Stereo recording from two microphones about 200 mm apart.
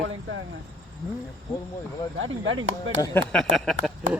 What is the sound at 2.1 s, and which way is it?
Speech, 75° right (ahead or behind).